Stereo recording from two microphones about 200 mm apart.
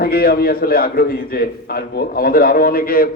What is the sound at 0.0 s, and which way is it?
A man's voice, 50° left (ahead or behind).